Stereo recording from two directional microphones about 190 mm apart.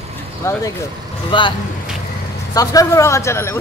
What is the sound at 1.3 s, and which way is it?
Speech, 25° left (ahead or behind).